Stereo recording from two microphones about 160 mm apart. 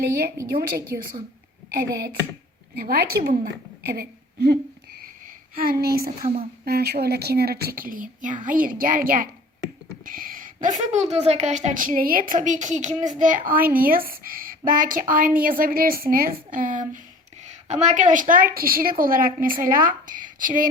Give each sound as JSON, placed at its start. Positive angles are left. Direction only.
{"t": 1.7, "sound": "speech", "side_deg": -65}
{"t": 3.3, "sound": "speech", "side_deg": -60}
{"t": 5.5, "sound": "a woman's voice", "side_deg": -70}